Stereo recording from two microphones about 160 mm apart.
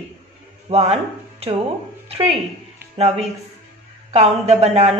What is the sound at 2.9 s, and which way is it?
Speech, 40° right (ahead or behind).